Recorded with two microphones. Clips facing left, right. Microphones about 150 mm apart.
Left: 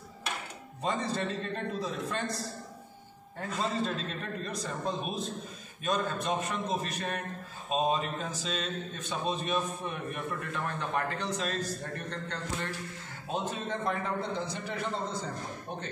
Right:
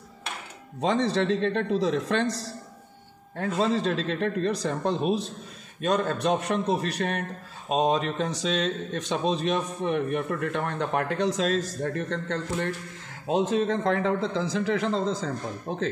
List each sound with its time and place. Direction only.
0.7 s a man's voice: 85° right